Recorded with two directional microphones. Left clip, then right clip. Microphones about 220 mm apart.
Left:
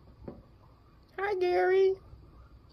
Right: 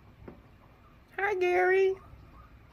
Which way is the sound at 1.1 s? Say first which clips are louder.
Right 1 dB; 15° right (ahead or behind).